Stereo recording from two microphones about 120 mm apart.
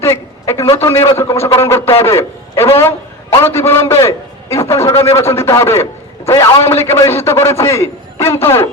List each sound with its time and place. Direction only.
0.0 s a man's voice: 25° left (ahead or behind)